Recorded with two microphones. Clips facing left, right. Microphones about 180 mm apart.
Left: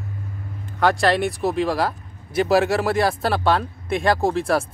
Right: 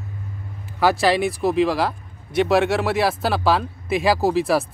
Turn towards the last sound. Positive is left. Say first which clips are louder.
# right 2 dB
turn(degrees=0)  # may be behind; listen again after turning